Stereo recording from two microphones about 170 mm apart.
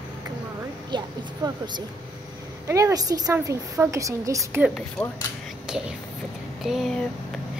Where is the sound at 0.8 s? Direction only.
25° right (ahead or behind).